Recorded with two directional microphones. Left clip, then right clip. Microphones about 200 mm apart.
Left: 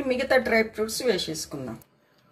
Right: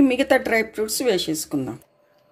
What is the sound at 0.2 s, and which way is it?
Speech, 50° right (ahead or behind).